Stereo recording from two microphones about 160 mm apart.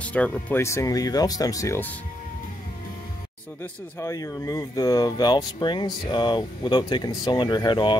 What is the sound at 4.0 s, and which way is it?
Speech, 20° left (ahead or behind).